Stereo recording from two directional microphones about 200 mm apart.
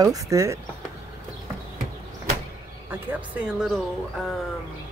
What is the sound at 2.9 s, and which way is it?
Speech, 10° right (ahead or behind).